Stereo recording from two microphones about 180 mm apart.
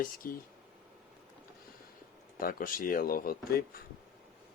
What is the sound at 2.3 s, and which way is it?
Speech, 50° left (ahead or behind).